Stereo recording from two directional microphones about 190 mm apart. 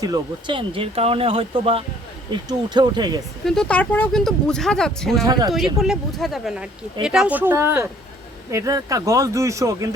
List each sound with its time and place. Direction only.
0.0 s speech: 20° right (ahead or behind)
3.4 s speech: 5° left (ahead or behind); by 9.9 s 15° right (ahead or behind)